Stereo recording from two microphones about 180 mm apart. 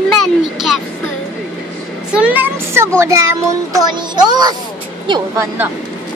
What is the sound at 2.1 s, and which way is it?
Child singing, 10° right (ahead or behind).